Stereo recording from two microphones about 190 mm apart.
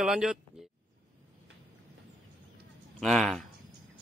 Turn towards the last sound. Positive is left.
turn(degrees=0)  # may be behind; listen again after turning